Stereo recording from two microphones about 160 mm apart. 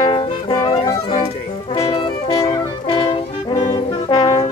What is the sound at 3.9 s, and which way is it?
Brass instrument, 25° left (ahead or behind).